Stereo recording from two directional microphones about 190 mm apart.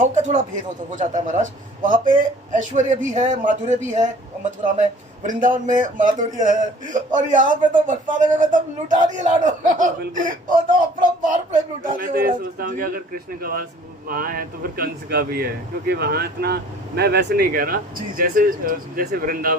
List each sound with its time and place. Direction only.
0.0 s a man's voice: 40° right (ahead or behind)